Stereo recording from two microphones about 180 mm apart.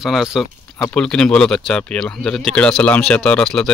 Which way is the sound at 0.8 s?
10° left (ahead or behind).